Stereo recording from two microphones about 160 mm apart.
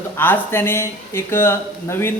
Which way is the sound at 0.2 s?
15° left (ahead or behind).